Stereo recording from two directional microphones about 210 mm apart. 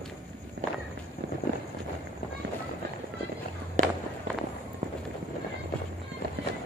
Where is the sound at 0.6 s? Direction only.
55° right (ahead or behind).